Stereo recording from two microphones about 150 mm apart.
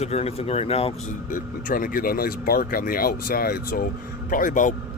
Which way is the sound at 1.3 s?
65° left (ahead or behind).